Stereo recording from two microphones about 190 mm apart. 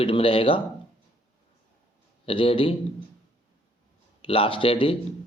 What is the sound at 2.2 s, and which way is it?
Speech, 30° left (ahead or behind).